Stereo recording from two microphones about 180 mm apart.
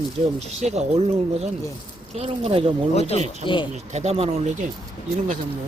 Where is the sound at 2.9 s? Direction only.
35° left (ahead or behind).